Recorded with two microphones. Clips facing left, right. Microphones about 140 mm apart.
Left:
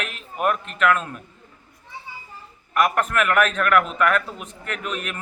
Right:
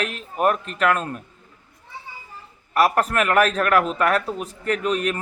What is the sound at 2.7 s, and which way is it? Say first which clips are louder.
A man's voice: right 2 dB; 35° right (ahead or behind).